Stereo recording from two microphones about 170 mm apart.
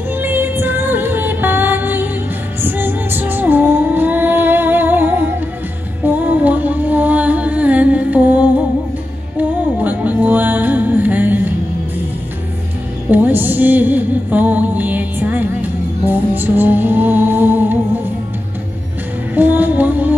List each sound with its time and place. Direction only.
0.2 s music: 10° right (ahead or behind)
13.1 s music: 10° right (ahead or behind)
19.3 s music: 10° right (ahead or behind)